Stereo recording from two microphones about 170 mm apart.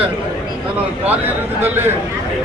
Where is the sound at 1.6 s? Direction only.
10° right (ahead or behind).